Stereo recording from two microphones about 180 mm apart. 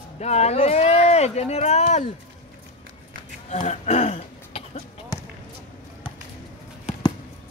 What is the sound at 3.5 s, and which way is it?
Speech, 40° left (ahead or behind).